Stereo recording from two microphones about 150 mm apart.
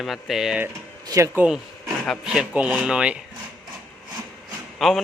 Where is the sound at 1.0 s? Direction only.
25° right (ahead or behind).